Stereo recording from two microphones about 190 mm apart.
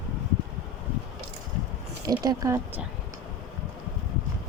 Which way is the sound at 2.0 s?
20° right (ahead or behind).